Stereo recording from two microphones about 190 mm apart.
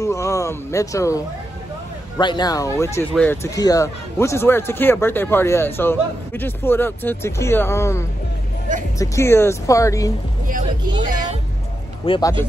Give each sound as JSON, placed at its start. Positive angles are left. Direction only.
{"t": 0.0, "sound": "speech", "side_deg": 15}
{"t": 12.1, "sound": "speech", "side_deg": 20}